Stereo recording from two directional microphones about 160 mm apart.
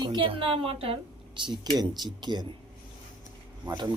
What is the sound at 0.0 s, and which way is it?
A woman's voice, 30° right (ahead or behind).